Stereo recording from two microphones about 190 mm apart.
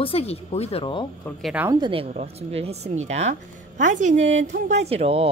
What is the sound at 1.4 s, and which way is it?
Speech, 5° right (ahead or behind).